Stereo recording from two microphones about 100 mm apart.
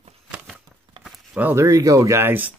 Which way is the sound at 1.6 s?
35° right (ahead or behind).